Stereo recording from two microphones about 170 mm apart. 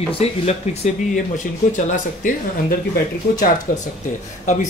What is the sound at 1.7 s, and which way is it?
Speech, 50° left (ahead or behind).